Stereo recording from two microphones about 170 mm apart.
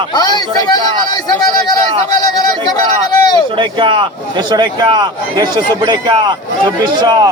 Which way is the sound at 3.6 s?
30° right (ahead or behind).